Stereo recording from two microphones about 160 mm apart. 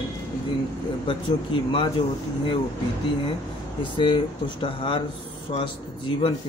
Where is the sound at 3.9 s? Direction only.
30° left (ahead or behind).